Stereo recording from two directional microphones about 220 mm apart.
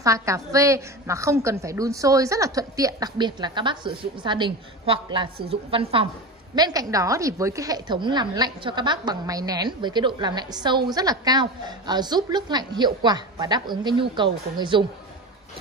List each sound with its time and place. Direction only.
0.0 s a woman's voice: 15° right (ahead or behind)